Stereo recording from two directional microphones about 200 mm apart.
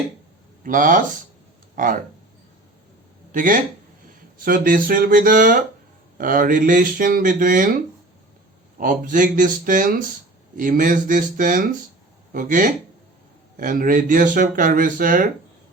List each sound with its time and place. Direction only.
0.6 s speech: 45° right (ahead or behind)
3.3 s speech: 40° right (ahead or behind)
8.8 s speech: 40° right (ahead or behind)